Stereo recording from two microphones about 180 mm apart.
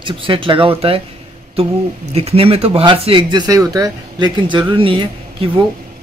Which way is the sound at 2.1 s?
35° right (ahead or behind).